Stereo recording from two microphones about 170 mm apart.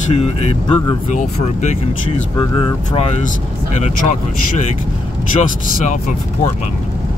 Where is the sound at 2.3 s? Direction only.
25° left (ahead or behind); by 4.2 s 45° left (ahead or behind).